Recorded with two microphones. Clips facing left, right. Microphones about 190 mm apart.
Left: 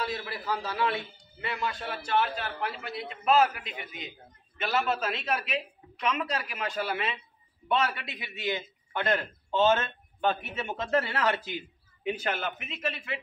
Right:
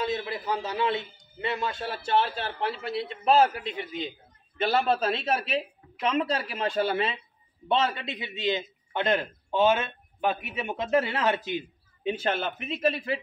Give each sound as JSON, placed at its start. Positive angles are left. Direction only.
{"t": 0.0, "sound": "a man's voice", "side_deg": -20}